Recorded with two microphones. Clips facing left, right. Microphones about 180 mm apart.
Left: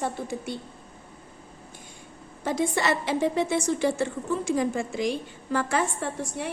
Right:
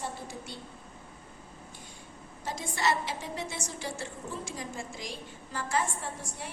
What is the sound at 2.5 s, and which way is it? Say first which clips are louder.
A woman's voice: left 6 dB; 60° left (ahead or behind).